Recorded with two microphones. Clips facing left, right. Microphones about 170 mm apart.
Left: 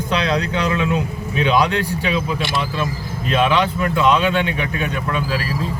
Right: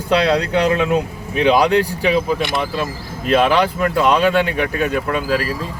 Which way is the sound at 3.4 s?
40° right (ahead or behind).